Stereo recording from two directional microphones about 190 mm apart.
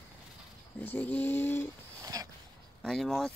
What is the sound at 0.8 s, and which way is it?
Speech, 10° left (ahead or behind).